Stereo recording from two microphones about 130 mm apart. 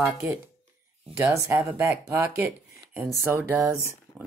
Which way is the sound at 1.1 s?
20° right (ahead or behind).